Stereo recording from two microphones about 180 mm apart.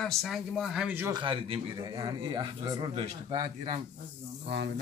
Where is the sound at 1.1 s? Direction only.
30° right (ahead or behind).